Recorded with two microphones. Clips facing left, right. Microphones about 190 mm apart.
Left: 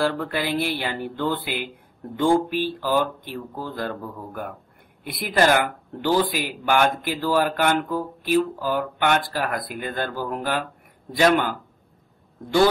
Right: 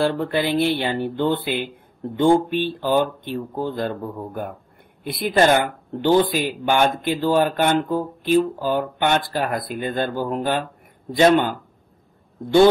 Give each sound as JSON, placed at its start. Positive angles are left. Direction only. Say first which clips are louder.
{"t": 0.0, "sound": "speech", "louder": "right 3 dB", "side_deg": -25}